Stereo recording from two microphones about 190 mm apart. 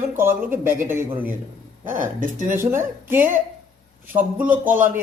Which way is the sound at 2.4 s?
10° right (ahead or behind).